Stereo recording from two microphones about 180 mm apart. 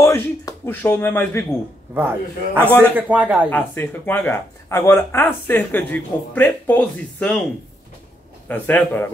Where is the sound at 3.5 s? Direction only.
10° left (ahead or behind).